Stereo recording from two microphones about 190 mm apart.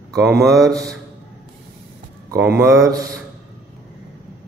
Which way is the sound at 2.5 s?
15° right (ahead or behind).